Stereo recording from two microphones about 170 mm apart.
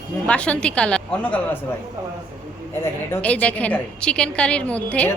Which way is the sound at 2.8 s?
10° left (ahead or behind).